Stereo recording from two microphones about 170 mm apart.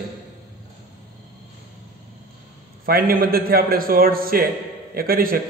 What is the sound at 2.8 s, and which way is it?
A man's voice, 60° right (ahead or behind).